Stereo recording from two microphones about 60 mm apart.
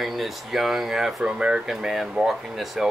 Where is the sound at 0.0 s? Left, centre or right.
Centre.